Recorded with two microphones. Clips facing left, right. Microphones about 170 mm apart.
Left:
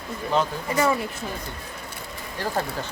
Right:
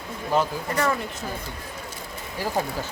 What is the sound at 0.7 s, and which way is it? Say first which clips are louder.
Speech: left 4 dB; 10° left (ahead or behind).